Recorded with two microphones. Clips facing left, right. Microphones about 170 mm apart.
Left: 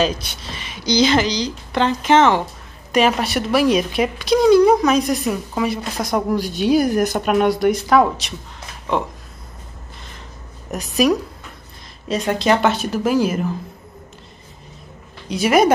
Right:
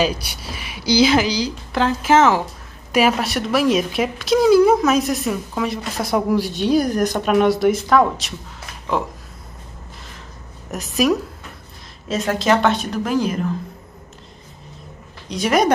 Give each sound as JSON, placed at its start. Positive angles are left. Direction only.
{"t": 0.0, "sound": "speech", "side_deg": -10}
{"t": 10.7, "sound": "speech", "side_deg": 0}
{"t": 15.2, "sound": "speech", "side_deg": 5}